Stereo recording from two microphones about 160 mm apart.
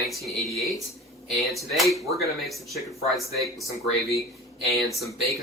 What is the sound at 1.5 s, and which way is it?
Speech, centre (ahead or behind).